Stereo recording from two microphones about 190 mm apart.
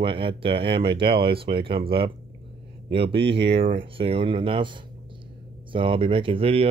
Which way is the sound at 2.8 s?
60° right (ahead or behind).